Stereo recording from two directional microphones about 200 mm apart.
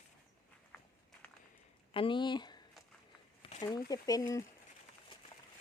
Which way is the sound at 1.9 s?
25° left (ahead or behind).